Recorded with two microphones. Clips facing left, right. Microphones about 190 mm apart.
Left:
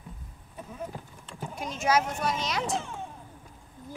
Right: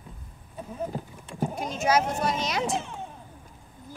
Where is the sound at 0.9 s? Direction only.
40° right (ahead or behind).